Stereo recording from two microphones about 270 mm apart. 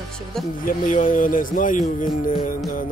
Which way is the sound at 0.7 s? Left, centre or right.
Left.